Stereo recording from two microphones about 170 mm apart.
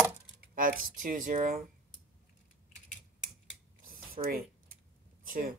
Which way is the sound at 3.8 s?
55° right (ahead or behind).